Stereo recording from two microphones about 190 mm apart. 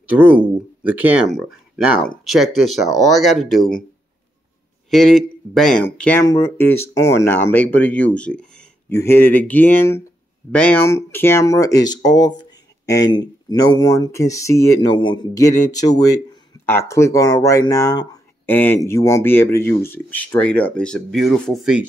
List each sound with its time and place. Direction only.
0.0 s speech: 10° right (ahead or behind)
4.9 s speech: centre (ahead or behind)